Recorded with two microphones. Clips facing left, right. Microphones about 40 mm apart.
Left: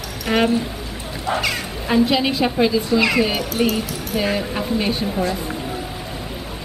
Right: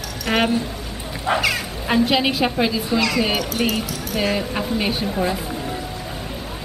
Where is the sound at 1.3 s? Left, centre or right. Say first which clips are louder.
Right 2 dB; right.